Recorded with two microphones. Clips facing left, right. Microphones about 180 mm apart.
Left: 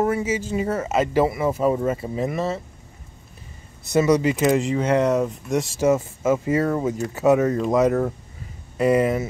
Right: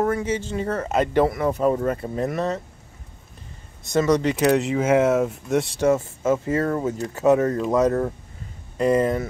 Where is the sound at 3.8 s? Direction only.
10° left (ahead or behind).